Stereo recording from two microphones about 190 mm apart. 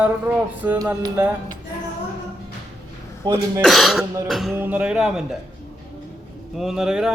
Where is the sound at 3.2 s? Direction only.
20° right (ahead or behind).